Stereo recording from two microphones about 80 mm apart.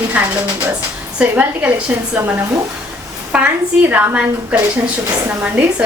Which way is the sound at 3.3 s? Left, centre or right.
Centre.